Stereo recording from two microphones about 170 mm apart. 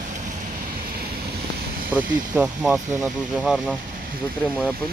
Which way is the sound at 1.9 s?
10° right (ahead or behind).